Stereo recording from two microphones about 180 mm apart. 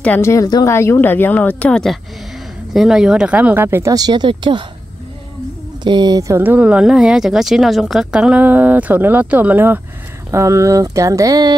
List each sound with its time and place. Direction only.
0.0 s speech: 10° left (ahead or behind); by 4.6 s 25° right (ahead or behind)
5.9 s speech: 25° right (ahead or behind)